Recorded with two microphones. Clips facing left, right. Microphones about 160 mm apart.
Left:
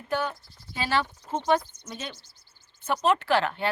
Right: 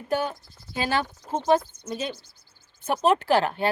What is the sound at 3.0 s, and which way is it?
Speech, 40° right (ahead or behind).